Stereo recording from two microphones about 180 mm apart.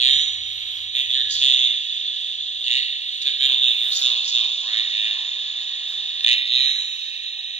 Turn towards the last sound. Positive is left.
turn(degrees=40)  # may be behind; listen again after turning